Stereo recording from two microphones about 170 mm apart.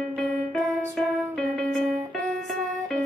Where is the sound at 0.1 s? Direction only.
5° left (ahead or behind).